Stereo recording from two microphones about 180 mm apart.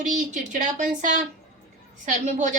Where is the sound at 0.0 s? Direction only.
45° right (ahead or behind).